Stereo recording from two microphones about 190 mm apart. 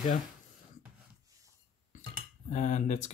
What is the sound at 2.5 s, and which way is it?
Speech, 40° left (ahead or behind).